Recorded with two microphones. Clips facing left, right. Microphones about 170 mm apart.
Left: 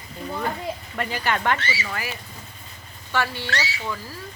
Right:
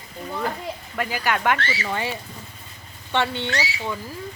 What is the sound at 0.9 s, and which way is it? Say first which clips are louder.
Speech: right 2 dB; 5° right (ahead or behind).